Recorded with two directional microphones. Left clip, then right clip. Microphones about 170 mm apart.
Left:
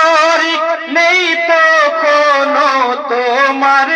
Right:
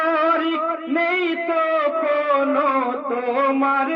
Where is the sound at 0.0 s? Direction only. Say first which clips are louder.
Left 9 dB; 40° right (ahead or behind).